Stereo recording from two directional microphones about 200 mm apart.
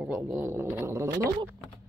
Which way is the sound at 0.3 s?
10° right (ahead or behind).